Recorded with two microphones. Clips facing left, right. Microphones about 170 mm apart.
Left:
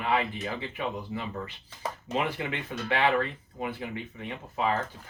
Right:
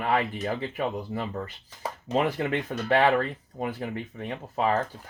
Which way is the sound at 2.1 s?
40° right (ahead or behind).